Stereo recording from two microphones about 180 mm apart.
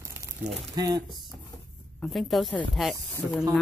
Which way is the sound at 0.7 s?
20° right (ahead or behind).